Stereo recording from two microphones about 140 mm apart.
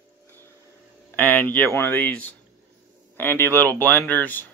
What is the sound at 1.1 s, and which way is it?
Speech, 15° left (ahead or behind).